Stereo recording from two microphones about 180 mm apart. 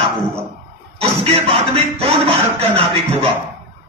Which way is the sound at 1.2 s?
35° right (ahead or behind).